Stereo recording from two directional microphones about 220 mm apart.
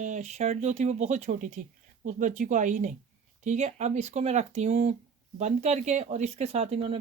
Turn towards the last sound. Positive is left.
turn(degrees=-25)  # may be behind; listen again after turning